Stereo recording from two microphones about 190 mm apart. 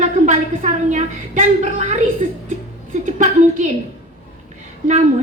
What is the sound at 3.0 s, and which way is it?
Speech, 40° right (ahead or behind).